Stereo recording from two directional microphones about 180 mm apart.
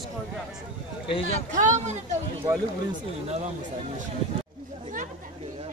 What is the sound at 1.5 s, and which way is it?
Speech, 45° right (ahead or behind).